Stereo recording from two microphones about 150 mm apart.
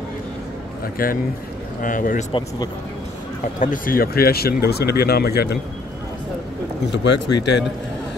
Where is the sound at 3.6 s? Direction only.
65° left (ahead or behind); by 5.5 s 90° left.